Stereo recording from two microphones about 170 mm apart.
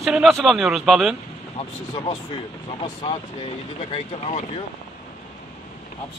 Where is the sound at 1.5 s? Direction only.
35° left (ahead or behind).